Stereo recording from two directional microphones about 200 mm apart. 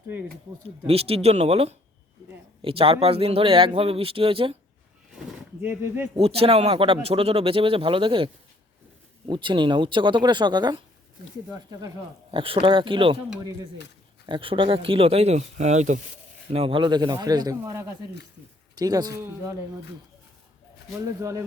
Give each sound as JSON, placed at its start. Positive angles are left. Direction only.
{"t": 0.9, "sound": "speech", "side_deg": -30}
{"t": 5.6, "sound": "speech", "side_deg": -10}
{"t": 6.1, "sound": "speech", "side_deg": -30}
{"t": 14.3, "sound": "speech", "side_deg": -25}
{"t": 21.2, "sound": "speech", "side_deg": -15}